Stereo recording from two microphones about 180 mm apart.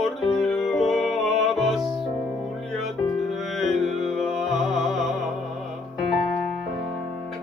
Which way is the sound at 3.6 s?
Centre (ahead or behind).